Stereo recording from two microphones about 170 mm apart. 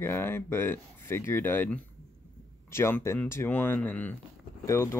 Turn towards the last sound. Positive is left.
turn(degrees=20)  # may be behind; listen again after turning